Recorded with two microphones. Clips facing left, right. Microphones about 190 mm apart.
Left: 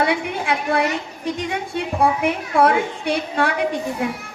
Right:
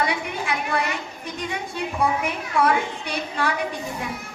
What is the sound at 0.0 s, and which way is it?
A woman's voice, 60° left (ahead or behind).